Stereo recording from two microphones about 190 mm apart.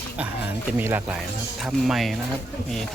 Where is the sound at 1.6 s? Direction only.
Centre (ahead or behind).